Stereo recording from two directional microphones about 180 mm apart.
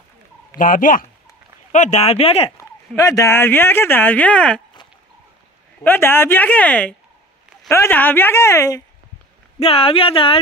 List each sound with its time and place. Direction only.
0.6 s speech: 50° left (ahead or behind)
3.0 s speech: 20° left (ahead or behind)
5.9 s speech: 10° left (ahead or behind)
9.6 s speech: 35° left (ahead or behind)